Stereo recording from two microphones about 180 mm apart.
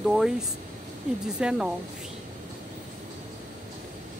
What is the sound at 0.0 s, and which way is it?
Speech, 5° right (ahead or behind).